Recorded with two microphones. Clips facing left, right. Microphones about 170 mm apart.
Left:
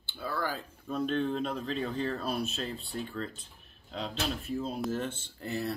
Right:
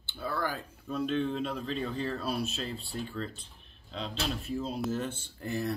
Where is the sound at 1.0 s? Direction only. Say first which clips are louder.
Even; centre (ahead or behind).